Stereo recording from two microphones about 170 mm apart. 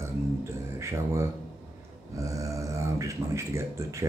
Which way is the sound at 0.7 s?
15° right (ahead or behind).